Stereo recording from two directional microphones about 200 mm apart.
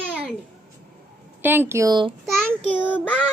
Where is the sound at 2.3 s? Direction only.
5° left (ahead or behind).